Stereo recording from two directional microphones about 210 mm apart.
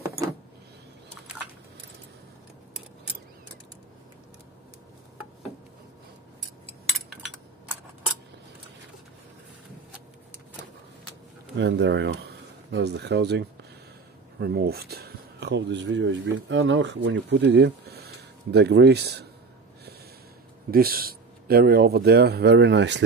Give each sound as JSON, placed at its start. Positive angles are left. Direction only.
{"t": 11.5, "sound": "speech", "side_deg": -55}
{"t": 20.7, "sound": "speech", "side_deg": -45}